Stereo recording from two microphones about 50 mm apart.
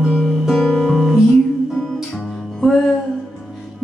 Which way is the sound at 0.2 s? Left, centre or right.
Centre.